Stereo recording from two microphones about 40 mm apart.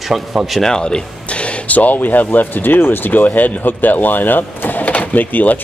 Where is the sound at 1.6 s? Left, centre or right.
Left.